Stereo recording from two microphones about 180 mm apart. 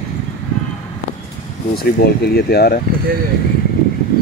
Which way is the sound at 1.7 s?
60° left (ahead or behind).